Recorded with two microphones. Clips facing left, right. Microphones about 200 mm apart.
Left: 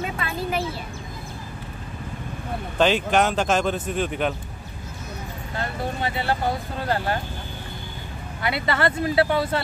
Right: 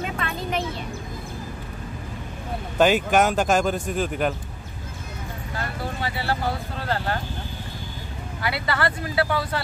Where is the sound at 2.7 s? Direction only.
5° right (ahead or behind).